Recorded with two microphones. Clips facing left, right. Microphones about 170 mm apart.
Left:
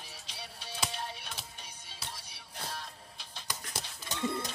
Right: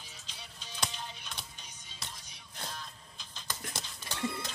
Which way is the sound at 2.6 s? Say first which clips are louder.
Left 2 dB; 65° left (ahead or behind).